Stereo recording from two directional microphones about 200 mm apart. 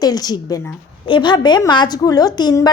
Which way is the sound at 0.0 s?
20° left (ahead or behind).